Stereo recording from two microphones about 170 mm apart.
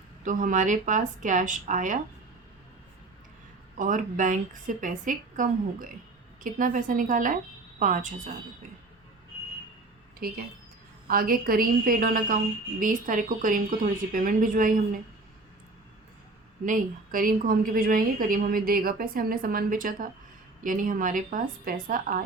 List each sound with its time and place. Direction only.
0.3 s a woman's voice: 50° right (ahead or behind)
3.8 s a woman's voice: 50° right (ahead or behind)
10.2 s a woman's voice: 60° right (ahead or behind)
16.6 s a woman's voice: 50° right (ahead or behind)